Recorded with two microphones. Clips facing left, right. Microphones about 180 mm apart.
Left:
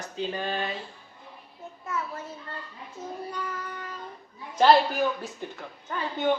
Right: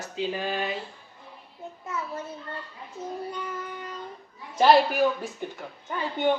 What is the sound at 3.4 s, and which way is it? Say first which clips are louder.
Child singing: right 1 dB; 20° right (ahead or behind).